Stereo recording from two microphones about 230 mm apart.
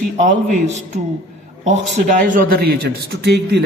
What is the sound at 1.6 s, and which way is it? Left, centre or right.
A man's voice, right.